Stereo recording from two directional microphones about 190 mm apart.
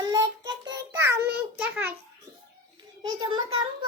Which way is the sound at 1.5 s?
5° right (ahead or behind).